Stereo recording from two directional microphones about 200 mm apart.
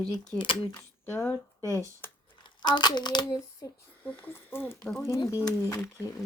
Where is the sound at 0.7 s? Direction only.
10° left (ahead or behind).